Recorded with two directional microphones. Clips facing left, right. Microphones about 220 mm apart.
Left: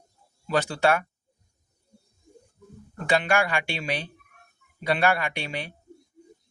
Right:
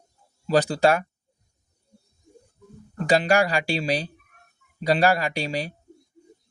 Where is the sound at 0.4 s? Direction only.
35° right (ahead or behind).